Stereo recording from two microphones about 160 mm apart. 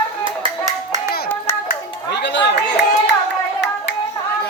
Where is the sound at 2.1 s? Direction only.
90° left.